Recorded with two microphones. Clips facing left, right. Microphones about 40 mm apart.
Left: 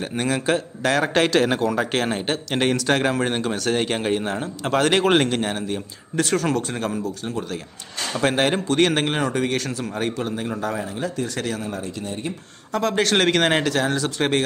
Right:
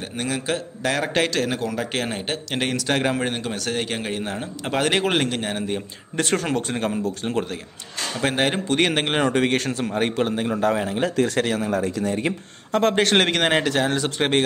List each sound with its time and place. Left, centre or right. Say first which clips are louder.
0.1 s a man's voice: left 4 dB; centre
1.3 s speech: left 5 dB; left
1.6 s a man's voice: left 4 dB; centre
5.6 s a man's voice: right 1 dB; centre
8.2 s a man's voice: left 2 dB; centre
9.0 s speech: right 2 dB; right
11.6 s speech: right 6 dB; right
12.9 s speech: left 2 dB; right
13.2 s a man's voice: left 1 dB; centre
13.7 s speech: even; centre